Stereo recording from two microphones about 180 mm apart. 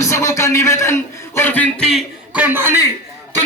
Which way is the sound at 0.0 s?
15° left (ahead or behind).